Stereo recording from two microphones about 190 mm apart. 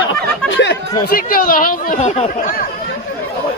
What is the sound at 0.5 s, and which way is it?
Speech, 70° left (ahead or behind).